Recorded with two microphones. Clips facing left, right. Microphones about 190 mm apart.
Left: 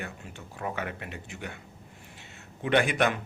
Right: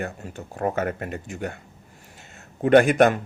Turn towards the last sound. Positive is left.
turn(degrees=-45)  # may be behind; listen again after turning